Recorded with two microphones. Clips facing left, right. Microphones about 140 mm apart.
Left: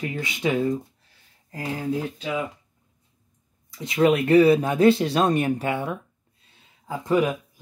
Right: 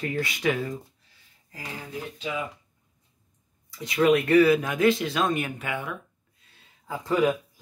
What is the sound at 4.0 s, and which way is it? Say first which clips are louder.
Speech: left 2 dB; 25° left (ahead or behind).